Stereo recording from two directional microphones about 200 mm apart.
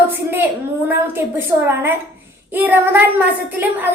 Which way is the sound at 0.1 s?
10° right (ahead or behind).